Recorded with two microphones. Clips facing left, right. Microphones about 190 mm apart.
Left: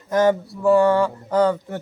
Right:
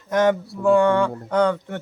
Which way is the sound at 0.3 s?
5° left (ahead or behind).